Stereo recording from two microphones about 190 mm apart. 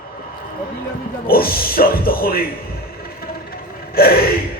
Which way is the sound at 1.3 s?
50° left (ahead or behind).